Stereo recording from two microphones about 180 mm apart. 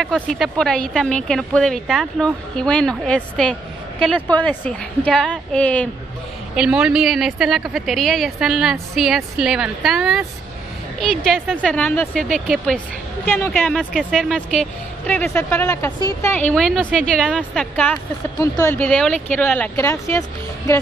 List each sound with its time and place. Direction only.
0.0 s a woman's voice: centre (ahead or behind)
6.5 s a woman's voice: 5° right (ahead or behind); by 13.5 s 10° left (ahead or behind)
13.5 s a woman's voice: centre (ahead or behind)
18.4 s a woman's voice: 15° left (ahead or behind)